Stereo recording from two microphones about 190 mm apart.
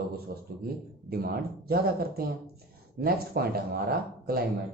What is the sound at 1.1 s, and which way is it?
Speech, 55° right (ahead or behind).